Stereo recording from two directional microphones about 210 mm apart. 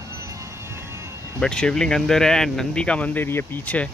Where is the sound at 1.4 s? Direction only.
5° left (ahead or behind).